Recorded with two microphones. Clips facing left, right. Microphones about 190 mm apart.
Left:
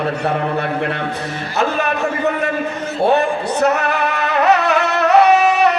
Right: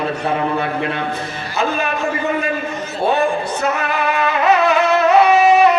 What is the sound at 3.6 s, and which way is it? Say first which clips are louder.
Music: left 4 dB; 70° left (ahead or behind).